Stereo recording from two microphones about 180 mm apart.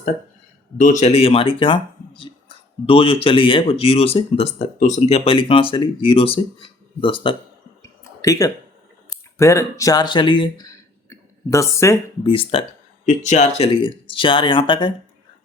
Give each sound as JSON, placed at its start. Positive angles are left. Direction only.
{"t": 0.8, "sound": "speech", "side_deg": 45}
{"t": 7.8, "sound": "a sound", "side_deg": 15}
{"t": 9.0, "sound": "speech", "side_deg": 15}
{"t": 12.2, "sound": "speech", "side_deg": 30}
{"t": 13.1, "sound": "speech", "side_deg": 40}